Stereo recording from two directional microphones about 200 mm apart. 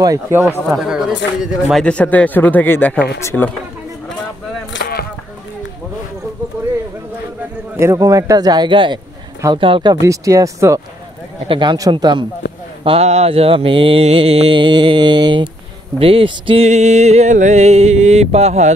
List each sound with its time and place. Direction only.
0.0 s a man's voice: 15° right (ahead or behind)
0.7 s speech: centre (ahead or behind)
4.7 s a sound: 70° left (ahead or behind)
6.5 s a sound: 10° right (ahead or behind)
7.7 s a man's voice: 15° right (ahead or behind)
11.4 s mantra: 25° right (ahead or behind)
16.0 s music: 30° right (ahead or behind)